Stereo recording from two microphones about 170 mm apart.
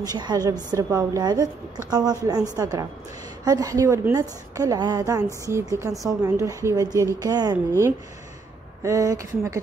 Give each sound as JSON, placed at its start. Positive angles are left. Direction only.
{"t": 0.0, "sound": "a woman's voice", "side_deg": -25}